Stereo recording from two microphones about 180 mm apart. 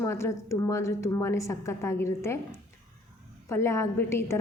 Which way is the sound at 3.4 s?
15° left (ahead or behind).